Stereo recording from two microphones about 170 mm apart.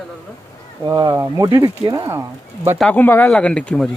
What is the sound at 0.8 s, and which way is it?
Speech, 20° right (ahead or behind).